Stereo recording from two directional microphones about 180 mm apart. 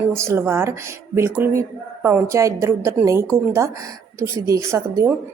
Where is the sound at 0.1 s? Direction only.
15° right (ahead or behind).